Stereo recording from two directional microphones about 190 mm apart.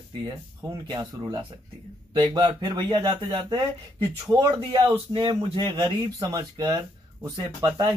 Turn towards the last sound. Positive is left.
turn(degrees=-20)  # may be behind; listen again after turning